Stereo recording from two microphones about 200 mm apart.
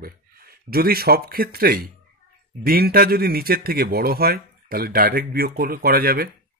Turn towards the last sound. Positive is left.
turn(degrees=-50)  # may be behind; listen again after turning